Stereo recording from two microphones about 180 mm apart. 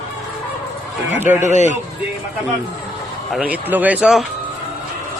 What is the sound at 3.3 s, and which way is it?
Speech, 5° right (ahead or behind).